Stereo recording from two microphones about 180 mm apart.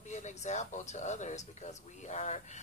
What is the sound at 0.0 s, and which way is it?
Speech, 40° left (ahead or behind).